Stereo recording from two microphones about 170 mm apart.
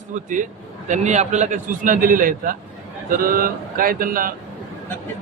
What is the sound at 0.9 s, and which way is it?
A man's voice, 45° right (ahead or behind).